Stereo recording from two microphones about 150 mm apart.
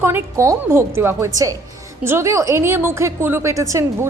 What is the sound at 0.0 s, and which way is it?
A woman's voice, 15° right (ahead or behind).